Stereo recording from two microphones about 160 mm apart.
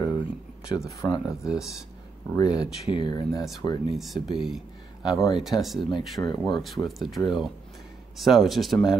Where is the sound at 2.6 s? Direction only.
30° left (ahead or behind).